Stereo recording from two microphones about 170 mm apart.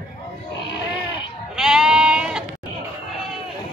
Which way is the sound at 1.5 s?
5° right (ahead or behind).